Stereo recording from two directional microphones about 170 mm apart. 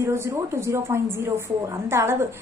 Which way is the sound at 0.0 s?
15° right (ahead or behind).